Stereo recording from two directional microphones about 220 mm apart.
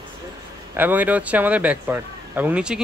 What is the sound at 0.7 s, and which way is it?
Speech, 10° right (ahead or behind).